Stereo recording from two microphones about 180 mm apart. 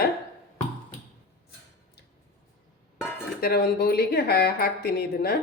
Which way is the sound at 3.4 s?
60° left (ahead or behind).